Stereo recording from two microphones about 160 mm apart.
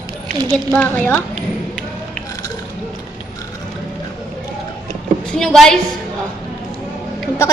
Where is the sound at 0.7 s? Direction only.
10° left (ahead or behind).